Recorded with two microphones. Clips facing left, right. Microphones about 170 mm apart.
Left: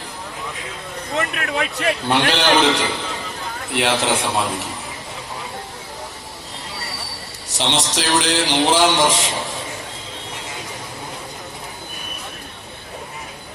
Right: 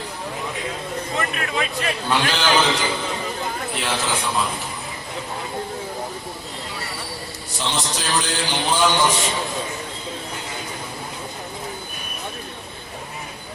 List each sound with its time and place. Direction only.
1.1 s a man's voice: 60° left (ahead or behind)
3.8 s a man's voice: 70° left (ahead or behind)
7.6 s a man's voice: 80° left